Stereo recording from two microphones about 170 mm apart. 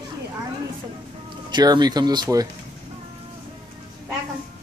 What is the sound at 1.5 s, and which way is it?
Speech, 25° right (ahead or behind).